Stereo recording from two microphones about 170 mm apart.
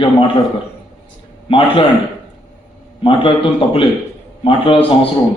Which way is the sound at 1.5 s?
30° left (ahead or behind).